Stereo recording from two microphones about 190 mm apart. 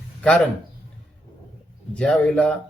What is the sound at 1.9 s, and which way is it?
Speech, 5° left (ahead or behind).